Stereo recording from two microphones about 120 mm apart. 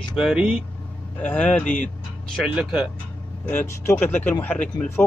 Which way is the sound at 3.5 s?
20° left (ahead or behind).